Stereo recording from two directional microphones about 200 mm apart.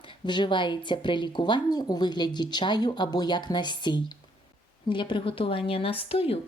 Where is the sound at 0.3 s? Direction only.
25° left (ahead or behind).